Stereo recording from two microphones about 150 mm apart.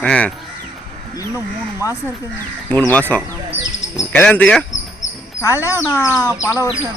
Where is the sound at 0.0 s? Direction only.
5° left (ahead or behind).